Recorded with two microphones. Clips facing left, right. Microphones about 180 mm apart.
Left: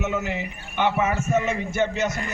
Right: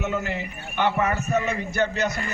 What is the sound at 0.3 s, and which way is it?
A man's voice, 15° left (ahead or behind).